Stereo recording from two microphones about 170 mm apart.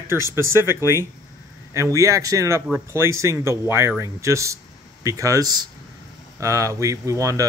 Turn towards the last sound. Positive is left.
turn(degrees=-20)  # may be behind; listen again after turning